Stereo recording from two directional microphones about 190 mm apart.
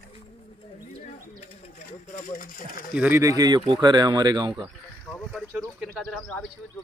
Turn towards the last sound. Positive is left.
turn(degrees=5)  # may be behind; listen again after turning